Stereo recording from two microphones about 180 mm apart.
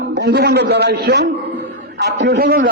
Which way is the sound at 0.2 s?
65° right (ahead or behind).